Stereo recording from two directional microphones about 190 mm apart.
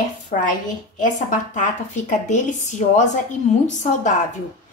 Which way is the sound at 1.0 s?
40° left (ahead or behind).